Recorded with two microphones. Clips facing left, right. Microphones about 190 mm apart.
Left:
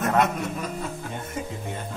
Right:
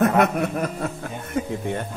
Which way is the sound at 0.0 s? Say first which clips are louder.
Right 4 dB; 60° right (ahead or behind).